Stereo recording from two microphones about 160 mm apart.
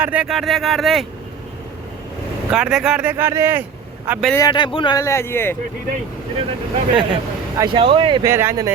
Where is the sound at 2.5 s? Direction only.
5° right (ahead or behind).